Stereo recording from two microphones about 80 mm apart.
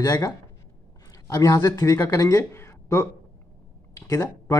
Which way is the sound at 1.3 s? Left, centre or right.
Left.